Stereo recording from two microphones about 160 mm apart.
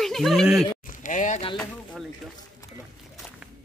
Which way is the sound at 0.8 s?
55° left (ahead or behind).